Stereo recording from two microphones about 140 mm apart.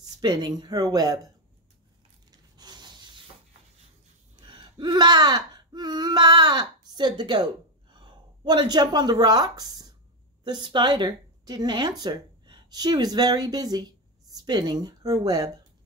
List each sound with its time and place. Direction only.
0.2 s speech: 30° right (ahead or behind)
2.3 s a sound: 30° right (ahead or behind)
4.4 s a woman's voice: 35° right (ahead or behind)